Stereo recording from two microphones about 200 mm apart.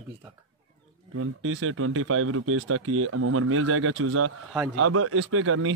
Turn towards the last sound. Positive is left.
turn(degrees=-90)